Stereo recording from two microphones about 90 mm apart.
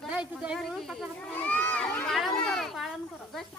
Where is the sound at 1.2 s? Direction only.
15° left (ahead or behind).